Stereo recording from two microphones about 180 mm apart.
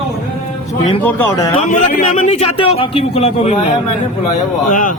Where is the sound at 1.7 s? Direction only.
45° left (ahead or behind).